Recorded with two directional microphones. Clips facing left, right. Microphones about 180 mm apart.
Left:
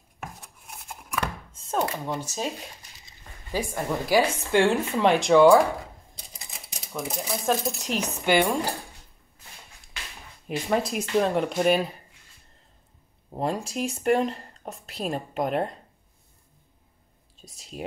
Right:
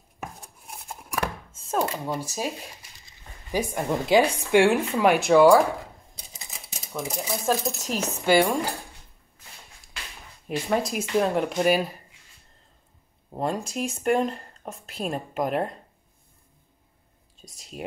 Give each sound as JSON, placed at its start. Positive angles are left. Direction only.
{"t": 0.4, "sound": "scissors", "side_deg": -35}
{"t": 1.5, "sound": "speech", "side_deg": -5}
{"t": 3.5, "sound": "a woman's voice", "side_deg": -20}
{"t": 10.5, "sound": "speech", "side_deg": 0}
{"t": 13.3, "sound": "speech", "side_deg": 0}
{"t": 17.4, "sound": "speech", "side_deg": 0}